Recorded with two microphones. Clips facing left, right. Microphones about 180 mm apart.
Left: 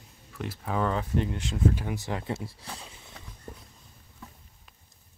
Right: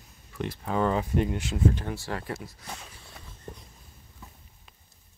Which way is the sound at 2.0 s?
20° left (ahead or behind).